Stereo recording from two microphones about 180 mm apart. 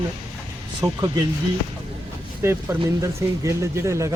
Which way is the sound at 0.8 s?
20° right (ahead or behind).